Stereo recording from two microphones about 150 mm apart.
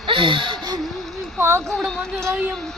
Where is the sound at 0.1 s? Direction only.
35° right (ahead or behind).